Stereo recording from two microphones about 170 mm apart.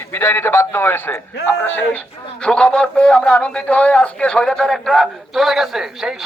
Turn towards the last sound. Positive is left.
turn(degrees=0)  # may be behind; listen again after turning